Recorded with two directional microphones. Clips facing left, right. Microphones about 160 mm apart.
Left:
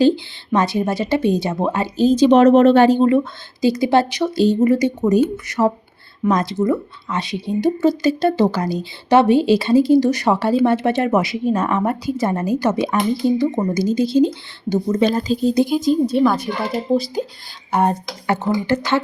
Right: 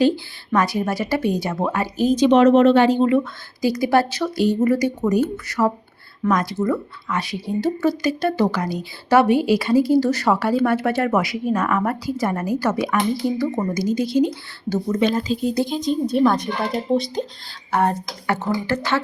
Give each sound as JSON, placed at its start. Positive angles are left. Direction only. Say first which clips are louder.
{"t": 0.5, "sound": "speech", "louder": "left 2 dB", "side_deg": 25}
{"t": 3.6, "sound": "speech", "louder": "left 2 dB", "side_deg": 25}
{"t": 15.0, "sound": "speech", "louder": "left 3 dB", "side_deg": 35}
{"t": 15.5, "sound": "a woman's voice", "louder": "left 5 dB", "side_deg": 10}
{"t": 17.7, "sound": "speech", "louder": "left 2 dB", "side_deg": 20}